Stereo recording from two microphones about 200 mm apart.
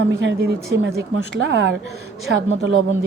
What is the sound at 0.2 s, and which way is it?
A woman's voice, 60° right (ahead or behind).